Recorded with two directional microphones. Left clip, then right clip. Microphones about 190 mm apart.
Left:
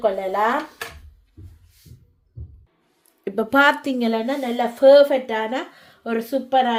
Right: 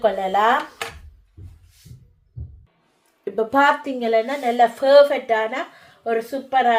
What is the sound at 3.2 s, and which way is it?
A woman's voice, 40° left (ahead or behind).